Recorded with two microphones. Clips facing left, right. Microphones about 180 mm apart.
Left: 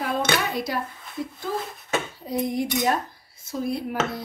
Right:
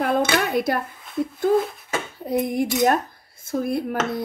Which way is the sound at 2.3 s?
55° right (ahead or behind).